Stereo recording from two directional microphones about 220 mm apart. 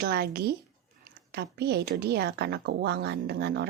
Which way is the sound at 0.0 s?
45° right (ahead or behind).